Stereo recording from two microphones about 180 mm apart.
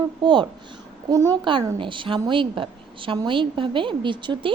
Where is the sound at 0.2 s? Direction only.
25° right (ahead or behind).